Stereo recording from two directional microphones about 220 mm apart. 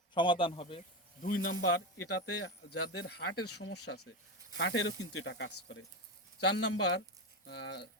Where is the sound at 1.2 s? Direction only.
40° left (ahead or behind).